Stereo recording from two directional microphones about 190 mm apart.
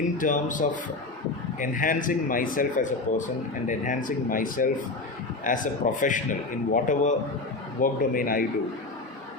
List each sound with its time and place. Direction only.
0.2 s speech: 45° left (ahead or behind)